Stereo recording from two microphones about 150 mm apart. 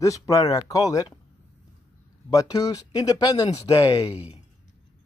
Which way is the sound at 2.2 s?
25° left (ahead or behind).